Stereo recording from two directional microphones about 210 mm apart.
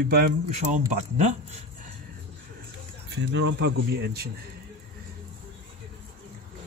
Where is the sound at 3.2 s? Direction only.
60° right (ahead or behind).